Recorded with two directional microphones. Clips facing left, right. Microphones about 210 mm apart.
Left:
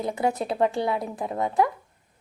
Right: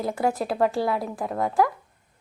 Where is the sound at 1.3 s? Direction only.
20° left (ahead or behind).